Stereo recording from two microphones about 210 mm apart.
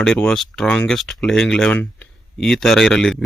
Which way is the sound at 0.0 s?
5° left (ahead or behind).